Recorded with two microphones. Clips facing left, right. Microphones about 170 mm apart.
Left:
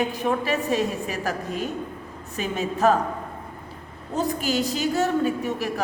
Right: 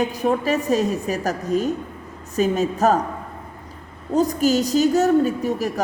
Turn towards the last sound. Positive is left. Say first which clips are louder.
# right 3 dB
turn(degrees=-40)  # may be behind; listen again after turning